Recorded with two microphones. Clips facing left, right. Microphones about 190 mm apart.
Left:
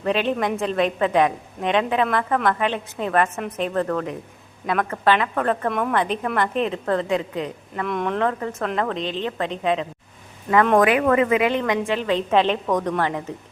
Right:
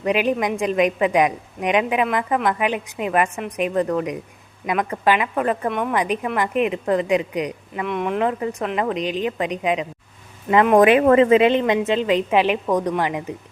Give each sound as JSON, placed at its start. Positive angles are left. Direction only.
{"t": 0.0, "sound": "a woman's voice", "side_deg": -10}
{"t": 7.9, "sound": "a woman's voice", "side_deg": -5}
{"t": 10.8, "sound": "a woman's voice", "side_deg": -25}